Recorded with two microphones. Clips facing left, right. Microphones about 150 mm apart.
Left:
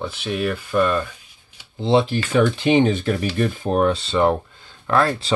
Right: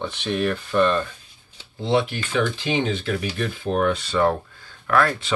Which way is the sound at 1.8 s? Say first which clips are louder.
Left 4 dB; 25° left (ahead or behind).